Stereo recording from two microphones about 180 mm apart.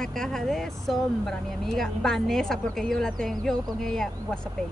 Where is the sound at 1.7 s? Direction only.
Centre (ahead or behind).